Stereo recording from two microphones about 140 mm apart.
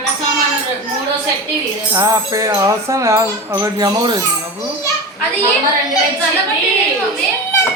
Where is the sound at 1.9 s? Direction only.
25° right (ahead or behind).